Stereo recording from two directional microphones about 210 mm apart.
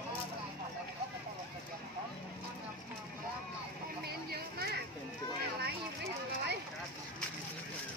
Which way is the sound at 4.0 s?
50° right (ahead or behind).